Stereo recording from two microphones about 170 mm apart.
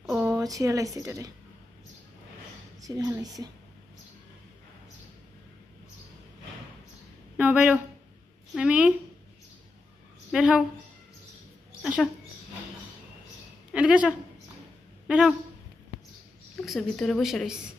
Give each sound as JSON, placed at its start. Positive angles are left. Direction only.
{"t": 0.0, "sound": "a sound", "side_deg": -5}
{"t": 0.9, "sound": "a woman's voice", "side_deg": -20}
{"t": 2.8, "sound": "a woman's voice", "side_deg": -20}
{"t": 7.3, "sound": "speech", "side_deg": -10}
{"t": 10.3, "sound": "a woman's voice", "side_deg": -5}
{"t": 11.8, "sound": "speech", "side_deg": -5}
{"t": 13.7, "sound": "a woman's voice", "side_deg": -5}
{"t": 16.6, "sound": "a woman's voice", "side_deg": 0}